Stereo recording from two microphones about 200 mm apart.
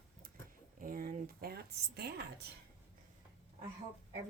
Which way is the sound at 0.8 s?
45° right (ahead or behind).